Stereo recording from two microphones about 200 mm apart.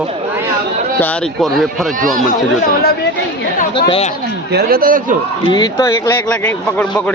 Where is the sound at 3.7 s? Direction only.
25° left (ahead or behind).